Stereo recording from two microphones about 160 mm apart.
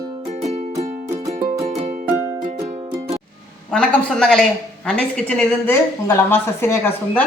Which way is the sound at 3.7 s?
5° left (ahead or behind).